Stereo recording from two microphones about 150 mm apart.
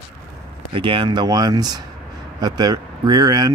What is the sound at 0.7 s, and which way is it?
Speech, 35° right (ahead or behind).